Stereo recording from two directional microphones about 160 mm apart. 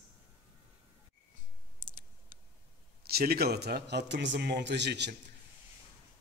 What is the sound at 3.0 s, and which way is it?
A man's voice, 70° right (ahead or behind).